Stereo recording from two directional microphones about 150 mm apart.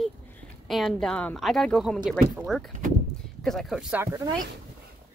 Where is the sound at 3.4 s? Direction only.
Centre (ahead or behind).